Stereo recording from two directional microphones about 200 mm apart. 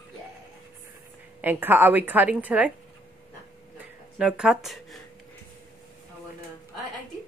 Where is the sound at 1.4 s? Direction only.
10° right (ahead or behind).